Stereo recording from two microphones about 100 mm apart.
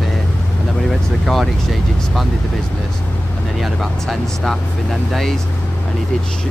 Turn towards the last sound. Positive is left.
turn(degrees=0)  # may be behind; listen again after turning